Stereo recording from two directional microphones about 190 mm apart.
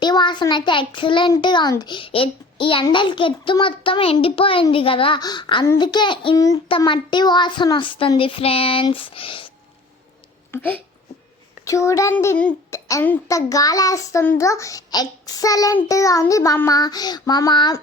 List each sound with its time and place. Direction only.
0.0 s a child's voice: 25° left (ahead or behind)
10.5 s a child's voice: 10° left (ahead or behind)